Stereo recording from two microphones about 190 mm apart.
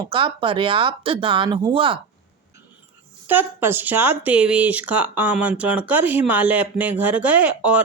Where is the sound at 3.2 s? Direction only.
10° right (ahead or behind).